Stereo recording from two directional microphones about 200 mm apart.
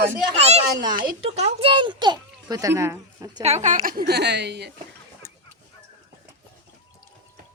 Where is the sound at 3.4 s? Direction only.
35° right (ahead or behind); by 4.7 s 60° right (ahead or behind).